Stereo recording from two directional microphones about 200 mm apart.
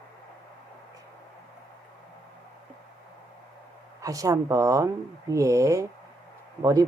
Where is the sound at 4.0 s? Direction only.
15° right (ahead or behind).